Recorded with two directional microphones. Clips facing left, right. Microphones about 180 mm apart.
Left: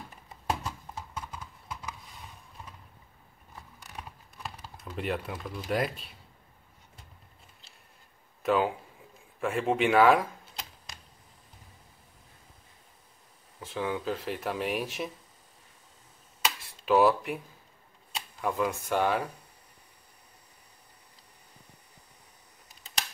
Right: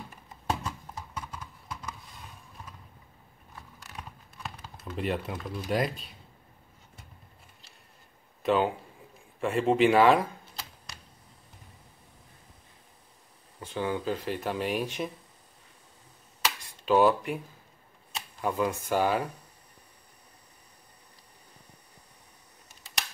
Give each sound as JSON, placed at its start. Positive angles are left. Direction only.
{"t": 0.5, "sound": "clip-clop", "side_deg": 5}
{"t": 4.9, "sound": "speech", "side_deg": 0}
{"t": 8.4, "sound": "speech", "side_deg": 0}
{"t": 13.6, "sound": "speech", "side_deg": 0}
{"t": 16.8, "sound": "speech", "side_deg": 0}
{"t": 18.4, "sound": "speech", "side_deg": 0}